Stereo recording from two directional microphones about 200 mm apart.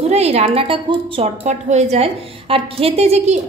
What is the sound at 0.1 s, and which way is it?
A woman's voice, 30° right (ahead or behind).